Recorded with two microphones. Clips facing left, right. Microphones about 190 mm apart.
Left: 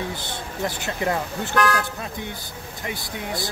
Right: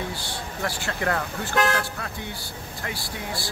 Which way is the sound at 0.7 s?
20° left (ahead or behind).